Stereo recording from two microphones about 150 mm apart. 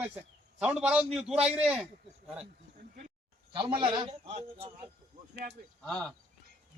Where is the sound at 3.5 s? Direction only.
30° right (ahead or behind).